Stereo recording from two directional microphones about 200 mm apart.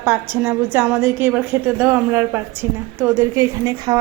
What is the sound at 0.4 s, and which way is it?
A woman's voice, 10° right (ahead or behind).